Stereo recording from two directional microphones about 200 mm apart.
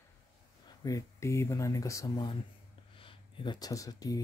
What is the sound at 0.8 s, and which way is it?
Speech, 15° left (ahead or behind).